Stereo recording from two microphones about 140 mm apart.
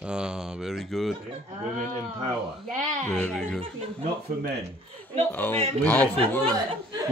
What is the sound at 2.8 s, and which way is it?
Speech, 60° right (ahead or behind).